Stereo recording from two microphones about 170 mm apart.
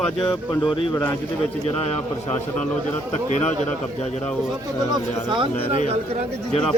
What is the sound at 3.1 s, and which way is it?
Speech, 40° left (ahead or behind).